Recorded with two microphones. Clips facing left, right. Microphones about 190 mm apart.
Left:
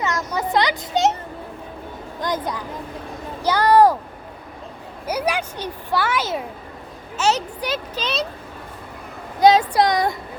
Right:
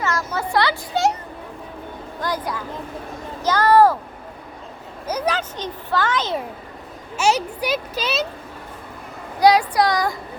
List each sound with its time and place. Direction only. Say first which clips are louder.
0.0 s speech: even; 20° left (ahead or behind)
2.2 s speech: left 1 dB; 20° left (ahead or behind)
3.4 s a sound: even; 15° left (ahead or behind)
5.0 s a child's voice: even; 10° left (ahead or behind)
7.2 s speech: right 1 dB; 10° right (ahead or behind)
9.4 s speech: left 1 dB; 20° left (ahead or behind)